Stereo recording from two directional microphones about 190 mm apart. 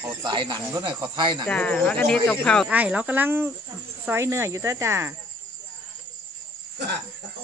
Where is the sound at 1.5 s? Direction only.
5° left (ahead or behind).